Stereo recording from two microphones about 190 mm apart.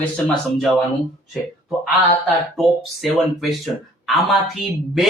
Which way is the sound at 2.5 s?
Centre (ahead or behind).